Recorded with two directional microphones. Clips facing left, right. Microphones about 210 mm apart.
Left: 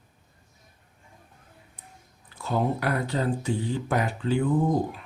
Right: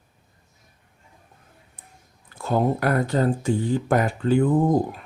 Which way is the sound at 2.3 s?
45° right (ahead or behind).